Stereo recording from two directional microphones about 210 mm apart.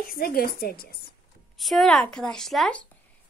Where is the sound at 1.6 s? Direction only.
Centre (ahead or behind).